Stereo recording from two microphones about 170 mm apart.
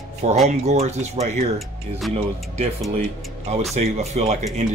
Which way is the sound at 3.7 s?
40° right (ahead or behind).